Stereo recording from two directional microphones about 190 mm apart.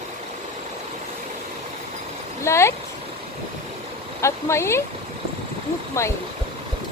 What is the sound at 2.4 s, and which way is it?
Speech, 15° left (ahead or behind).